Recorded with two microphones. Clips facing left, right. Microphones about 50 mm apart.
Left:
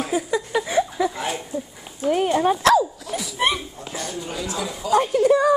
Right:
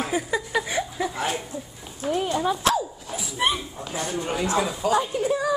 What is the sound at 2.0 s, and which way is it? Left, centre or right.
Speech, left.